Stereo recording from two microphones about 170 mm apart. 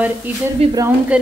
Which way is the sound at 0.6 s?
35° right (ahead or behind).